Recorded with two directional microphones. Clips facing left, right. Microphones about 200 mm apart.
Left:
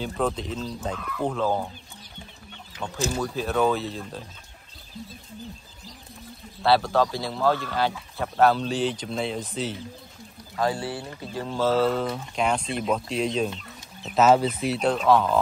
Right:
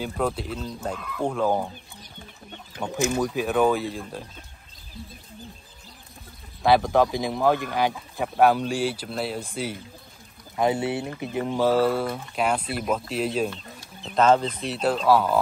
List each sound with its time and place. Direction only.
0.0 s speech: 5° right (ahead or behind)
2.8 s speech: 15° right (ahead or behind)
6.6 s speech: 15° right (ahead or behind)
10.5 s speech: 20° right (ahead or behind); by 13.5 s 5° right (ahead or behind)
14.1 s speech: 5° left (ahead or behind)